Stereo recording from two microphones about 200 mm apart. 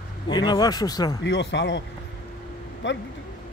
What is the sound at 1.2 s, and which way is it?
Speech, 65° left (ahead or behind).